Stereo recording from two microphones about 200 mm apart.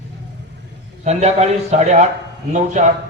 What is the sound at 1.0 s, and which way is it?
A man's voice, 35° right (ahead or behind).